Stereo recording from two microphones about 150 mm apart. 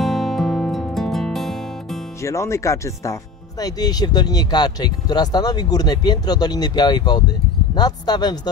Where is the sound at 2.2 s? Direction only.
20° left (ahead or behind).